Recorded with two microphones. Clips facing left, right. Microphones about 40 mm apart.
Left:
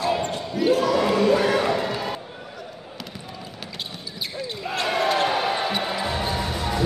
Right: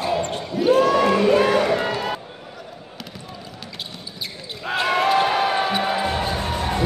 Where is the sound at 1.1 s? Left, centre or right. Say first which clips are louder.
Right 2 dB; right.